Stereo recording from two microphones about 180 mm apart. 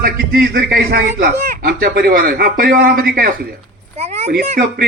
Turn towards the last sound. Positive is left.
turn(degrees=-60)  # may be behind; listen again after turning